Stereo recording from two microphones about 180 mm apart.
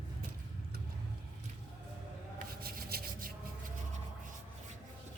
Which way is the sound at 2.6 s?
55° right (ahead or behind).